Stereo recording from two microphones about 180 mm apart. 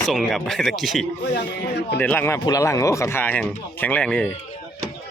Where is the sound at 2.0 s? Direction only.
10° left (ahead or behind).